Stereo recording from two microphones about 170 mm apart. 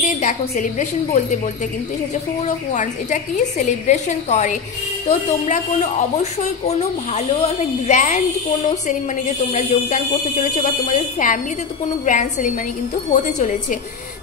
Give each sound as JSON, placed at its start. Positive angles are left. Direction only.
{"t": 0.0, "sound": "speech", "side_deg": 45}
{"t": 2.4, "sound": "speech", "side_deg": 45}
{"t": 9.5, "sound": "speech", "side_deg": 40}